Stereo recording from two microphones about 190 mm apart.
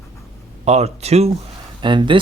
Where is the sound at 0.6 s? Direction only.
35° right (ahead or behind).